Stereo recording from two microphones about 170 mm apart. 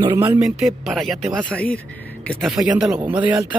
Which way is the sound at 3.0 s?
30° right (ahead or behind).